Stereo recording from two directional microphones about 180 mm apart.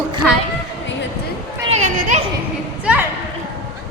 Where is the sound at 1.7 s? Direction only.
40° right (ahead or behind).